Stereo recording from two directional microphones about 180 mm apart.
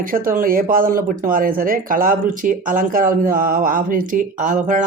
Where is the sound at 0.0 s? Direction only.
50° right (ahead or behind).